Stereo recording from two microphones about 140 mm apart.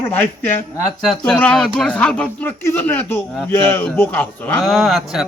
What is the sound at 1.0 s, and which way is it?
Speech, centre (ahead or behind).